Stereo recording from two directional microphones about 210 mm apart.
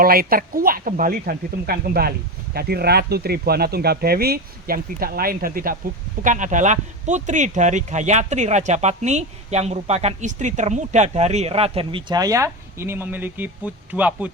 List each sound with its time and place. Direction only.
0.0 s speech: 45° right (ahead or behind); by 14.3 s 5° right (ahead or behind)